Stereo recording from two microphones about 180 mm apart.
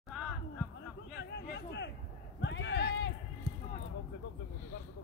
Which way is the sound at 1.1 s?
70° left (ahead or behind).